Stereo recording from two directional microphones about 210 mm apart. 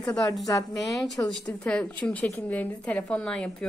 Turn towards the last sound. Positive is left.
turn(degrees=5)  # may be behind; listen again after turning